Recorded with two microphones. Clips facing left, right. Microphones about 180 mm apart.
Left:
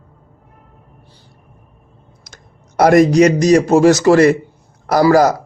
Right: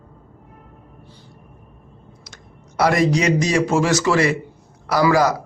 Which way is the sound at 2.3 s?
45° left (ahead or behind).